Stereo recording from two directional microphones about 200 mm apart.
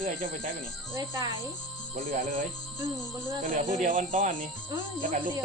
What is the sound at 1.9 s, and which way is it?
Speech, 40° right (ahead or behind).